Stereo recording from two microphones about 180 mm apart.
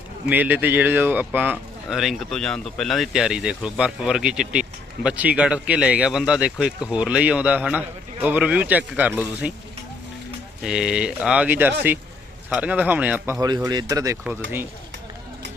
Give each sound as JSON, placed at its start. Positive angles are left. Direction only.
{"t": 0.3, "sound": "speech", "side_deg": -10}
{"t": 10.6, "sound": "speech", "side_deg": -5}
{"t": 13.4, "sound": "speech", "side_deg": -20}